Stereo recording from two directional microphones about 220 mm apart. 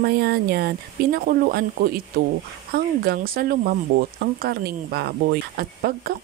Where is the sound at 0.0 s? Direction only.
45° right (ahead or behind).